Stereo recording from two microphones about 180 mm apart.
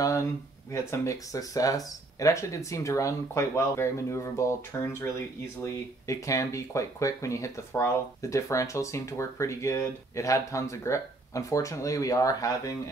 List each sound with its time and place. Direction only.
0.0 s speech: 15° left (ahead or behind)